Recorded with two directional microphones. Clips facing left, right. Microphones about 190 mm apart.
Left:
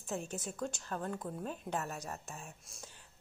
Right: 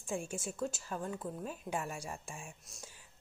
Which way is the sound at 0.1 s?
10° right (ahead or behind).